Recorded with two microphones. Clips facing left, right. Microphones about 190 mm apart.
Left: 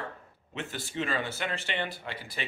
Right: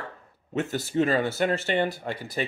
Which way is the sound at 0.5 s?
45° right (ahead or behind).